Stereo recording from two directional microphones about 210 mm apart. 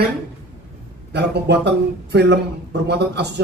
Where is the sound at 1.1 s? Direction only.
50° right (ahead or behind).